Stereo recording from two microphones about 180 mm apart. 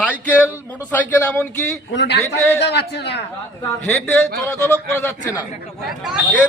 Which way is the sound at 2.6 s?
70° left (ahead or behind).